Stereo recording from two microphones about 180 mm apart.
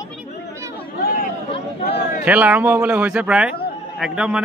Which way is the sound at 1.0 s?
50° left (ahead or behind).